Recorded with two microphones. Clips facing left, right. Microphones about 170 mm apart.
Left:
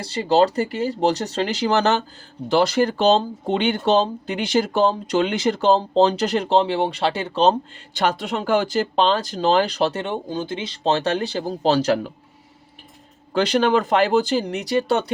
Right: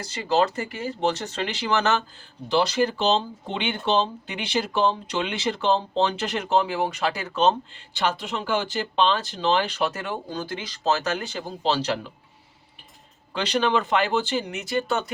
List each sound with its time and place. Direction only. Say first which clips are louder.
0.0 s speech: left 5 dB; 35° left (ahead or behind)
2.5 s speech: left 4 dB; 50° left (ahead or behind)
13.3 s speech: left 5 dB; 45° left (ahead or behind)